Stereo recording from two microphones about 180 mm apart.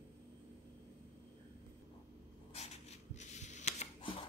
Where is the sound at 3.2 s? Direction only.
40° left (ahead or behind).